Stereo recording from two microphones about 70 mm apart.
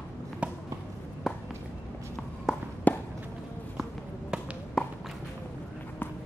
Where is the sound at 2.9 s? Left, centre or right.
Left.